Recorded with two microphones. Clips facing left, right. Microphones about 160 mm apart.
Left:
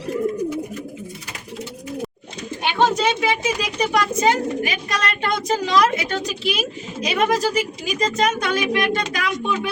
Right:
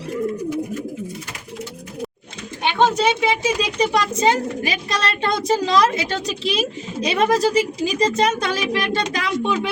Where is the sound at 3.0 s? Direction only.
10° right (ahead or behind).